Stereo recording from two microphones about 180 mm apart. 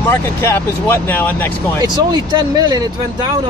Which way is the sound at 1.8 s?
25° right (ahead or behind).